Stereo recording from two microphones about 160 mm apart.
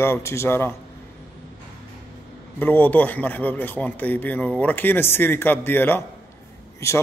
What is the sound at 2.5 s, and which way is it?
A man's voice, 10° left (ahead or behind).